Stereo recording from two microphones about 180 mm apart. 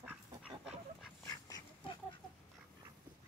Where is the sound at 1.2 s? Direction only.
20° left (ahead or behind).